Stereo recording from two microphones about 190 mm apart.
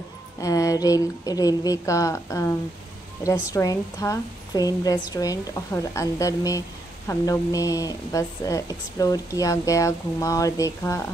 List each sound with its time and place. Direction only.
0.4 s a woman's voice: 20° left (ahead or behind)